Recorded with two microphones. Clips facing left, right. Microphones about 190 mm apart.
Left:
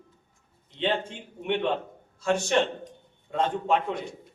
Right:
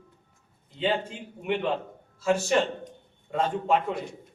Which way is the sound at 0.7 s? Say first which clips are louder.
Even; 5° right (ahead or behind).